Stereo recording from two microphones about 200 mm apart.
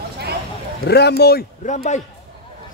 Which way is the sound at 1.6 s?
35° left (ahead or behind).